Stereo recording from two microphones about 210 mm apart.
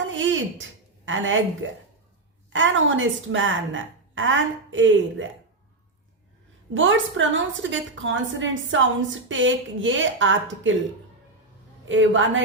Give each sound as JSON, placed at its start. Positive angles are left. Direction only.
{"t": 0.1, "sound": "a sound", "side_deg": -65}
{"t": 1.0, "sound": "a woman's voice", "side_deg": -65}
{"t": 6.7, "sound": "a woman's voice", "side_deg": -65}
{"t": 11.9, "sound": "a woman's voice", "side_deg": -65}